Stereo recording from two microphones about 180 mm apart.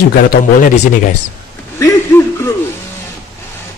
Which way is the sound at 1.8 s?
15° left (ahead or behind).